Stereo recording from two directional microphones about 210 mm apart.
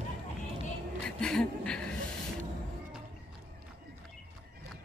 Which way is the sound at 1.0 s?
5° left (ahead or behind).